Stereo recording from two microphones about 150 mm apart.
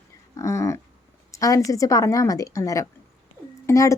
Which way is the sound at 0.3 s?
20° left (ahead or behind).